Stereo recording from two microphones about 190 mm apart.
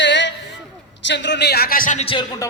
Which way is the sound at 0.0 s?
70° left (ahead or behind).